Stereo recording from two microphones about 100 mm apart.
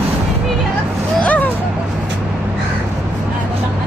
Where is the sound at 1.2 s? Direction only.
15° left (ahead or behind).